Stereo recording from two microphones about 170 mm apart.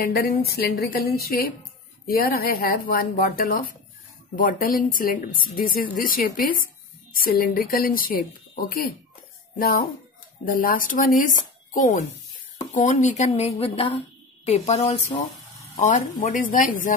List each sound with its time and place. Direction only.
0.0 s speech: 60° left (ahead or behind)